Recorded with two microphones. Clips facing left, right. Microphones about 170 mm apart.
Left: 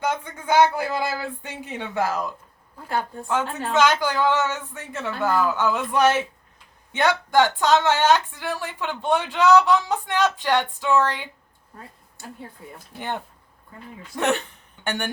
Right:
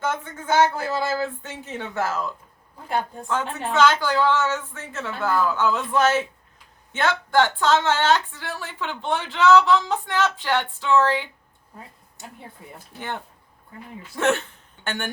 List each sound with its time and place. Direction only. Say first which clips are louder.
0.0 s speech: left 1 dB; 15° left (ahead or behind)
3.8 s speech: right 1 dB; 15° left (ahead or behind)
14.2 s speech: right 1 dB; 15° left (ahead or behind)